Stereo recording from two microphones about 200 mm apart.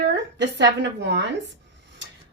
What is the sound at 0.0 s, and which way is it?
Speech, 60° right (ahead or behind).